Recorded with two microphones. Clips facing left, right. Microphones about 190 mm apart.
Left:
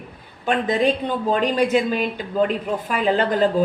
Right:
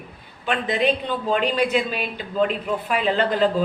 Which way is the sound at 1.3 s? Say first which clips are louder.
Left 2 dB; 40° left (ahead or behind).